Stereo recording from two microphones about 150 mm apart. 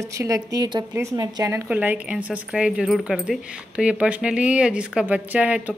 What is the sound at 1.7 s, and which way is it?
Speech, 10° right (ahead or behind).